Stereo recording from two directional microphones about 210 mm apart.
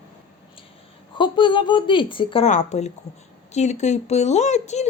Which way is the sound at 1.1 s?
25° left (ahead or behind).